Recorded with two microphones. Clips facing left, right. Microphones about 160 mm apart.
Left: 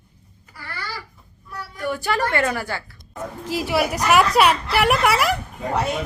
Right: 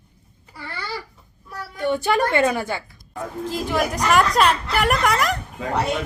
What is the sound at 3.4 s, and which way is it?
A woman's voice, 10° left (ahead or behind).